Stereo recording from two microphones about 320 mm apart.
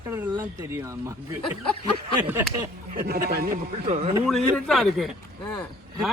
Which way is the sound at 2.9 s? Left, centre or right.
Right.